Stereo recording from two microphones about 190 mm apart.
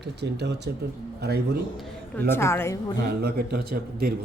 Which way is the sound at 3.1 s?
55° right (ahead or behind).